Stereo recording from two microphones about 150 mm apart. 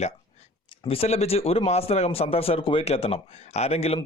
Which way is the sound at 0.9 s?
40° left (ahead or behind).